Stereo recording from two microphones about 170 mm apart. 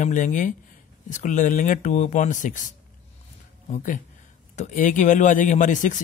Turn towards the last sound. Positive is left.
turn(degrees=50)  # may be behind; listen again after turning